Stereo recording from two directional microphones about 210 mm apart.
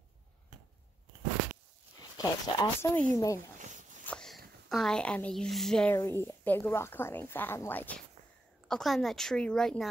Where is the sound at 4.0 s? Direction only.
5° left (ahead or behind).